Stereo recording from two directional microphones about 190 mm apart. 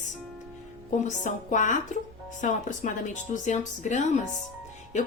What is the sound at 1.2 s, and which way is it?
Speech, 40° left (ahead or behind).